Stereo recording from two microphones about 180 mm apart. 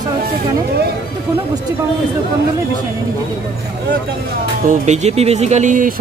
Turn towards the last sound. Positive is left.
turn(degrees=-45)  # may be behind; listen again after turning